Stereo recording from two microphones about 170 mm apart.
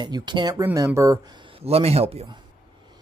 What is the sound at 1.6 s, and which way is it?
Speech, 35° right (ahead or behind).